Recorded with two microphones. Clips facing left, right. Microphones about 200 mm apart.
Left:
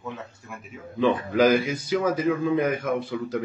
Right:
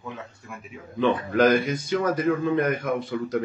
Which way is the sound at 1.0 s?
5° left (ahead or behind).